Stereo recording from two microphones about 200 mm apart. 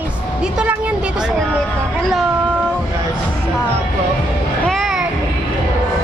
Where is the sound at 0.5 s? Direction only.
5° right (ahead or behind).